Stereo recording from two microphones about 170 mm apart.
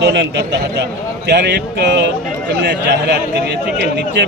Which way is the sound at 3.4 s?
80° right.